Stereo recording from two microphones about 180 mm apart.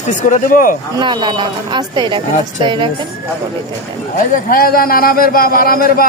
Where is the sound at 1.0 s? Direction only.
25° right (ahead or behind).